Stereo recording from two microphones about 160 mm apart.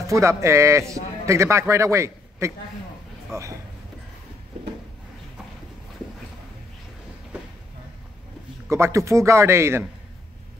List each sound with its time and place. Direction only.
0.0 s a man's voice: 20° right (ahead or behind)
8.6 s a man's voice: 15° right (ahead or behind)